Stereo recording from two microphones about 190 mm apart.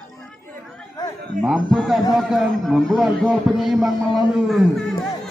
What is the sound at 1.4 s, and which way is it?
A man's voice, 5° right (ahead or behind).